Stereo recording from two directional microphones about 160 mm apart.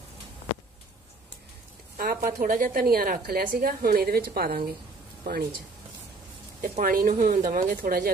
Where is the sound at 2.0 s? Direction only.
65° right (ahead or behind).